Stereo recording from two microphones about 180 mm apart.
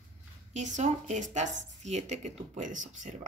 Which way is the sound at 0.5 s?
40° right (ahead or behind).